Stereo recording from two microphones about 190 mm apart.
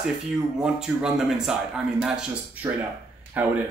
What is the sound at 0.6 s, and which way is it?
Speech, 5° right (ahead or behind).